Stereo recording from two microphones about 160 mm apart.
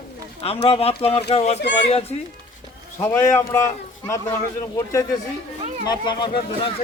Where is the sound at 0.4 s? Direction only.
40° left (ahead or behind).